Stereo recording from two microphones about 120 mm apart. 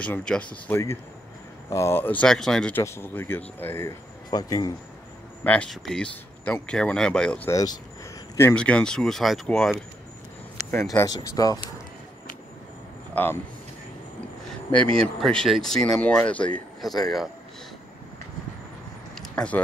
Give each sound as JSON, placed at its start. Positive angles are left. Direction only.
{"t": 0.0, "sound": "speech", "side_deg": 10}
{"t": 1.7, "sound": "speech", "side_deg": 20}
{"t": 2.2, "sound": "speech", "side_deg": 5}
{"t": 2.7, "sound": "speech", "side_deg": 20}
{"t": 4.3, "sound": "speech", "side_deg": 35}
{"t": 5.4, "sound": "speech", "side_deg": 10}
{"t": 7.4, "sound": "speech", "side_deg": 25}
{"t": 8.5, "sound": "speech", "side_deg": 10}
{"t": 10.9, "sound": "speech", "side_deg": 30}
{"t": 13.1, "sound": "speech", "side_deg": 15}
{"t": 14.7, "sound": "speech", "side_deg": 10}
{"t": 19.1, "sound": "a sound", "side_deg": 10}